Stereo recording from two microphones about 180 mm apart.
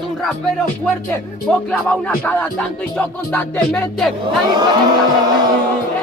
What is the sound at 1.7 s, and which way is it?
Music, 10° left (ahead or behind).